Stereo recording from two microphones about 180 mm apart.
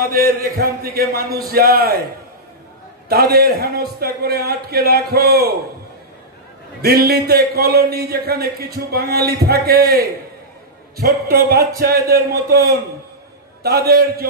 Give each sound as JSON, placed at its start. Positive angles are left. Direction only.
{"t": 0.1, "sound": "speech", "side_deg": -60}
{"t": 3.1, "sound": "speech", "side_deg": -60}
{"t": 6.8, "sound": "speech", "side_deg": -60}